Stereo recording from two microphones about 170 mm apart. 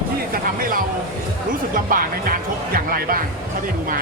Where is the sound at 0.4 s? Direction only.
55° right (ahead or behind).